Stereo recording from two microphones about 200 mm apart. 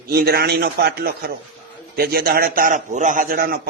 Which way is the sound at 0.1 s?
50° right (ahead or behind).